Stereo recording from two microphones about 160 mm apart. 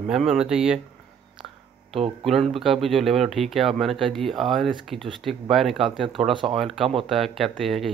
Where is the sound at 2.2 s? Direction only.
Centre (ahead or behind).